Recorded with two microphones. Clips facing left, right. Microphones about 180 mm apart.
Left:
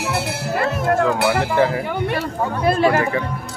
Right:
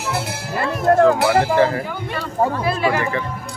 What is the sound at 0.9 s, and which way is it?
Speech, 40° right (ahead or behind).